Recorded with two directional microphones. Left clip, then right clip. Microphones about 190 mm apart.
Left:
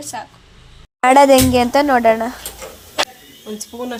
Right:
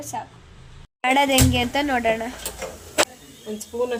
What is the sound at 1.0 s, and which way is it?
A woman's voice, 25° left (ahead or behind).